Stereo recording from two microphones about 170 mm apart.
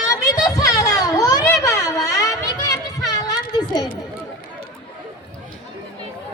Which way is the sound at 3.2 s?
25° left (ahead or behind).